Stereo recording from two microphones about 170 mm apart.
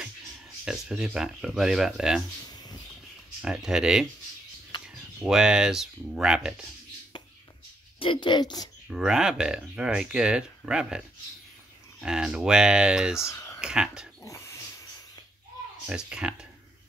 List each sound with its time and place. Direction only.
0.7 s speech: 5° right (ahead or behind)
2.4 s a sound: 25° left (ahead or behind)
3.4 s speech: 5° right (ahead or behind)
8.0 s a woman's voice: 30° left (ahead or behind)
8.9 s speech: 5° right (ahead or behind)
13.3 s a sound: 15° left (ahead or behind)
13.6 s speech: 5° right (ahead or behind)
14.2 s dog: 15° left (ahead or behind)
15.9 s speech: 5° right (ahead or behind)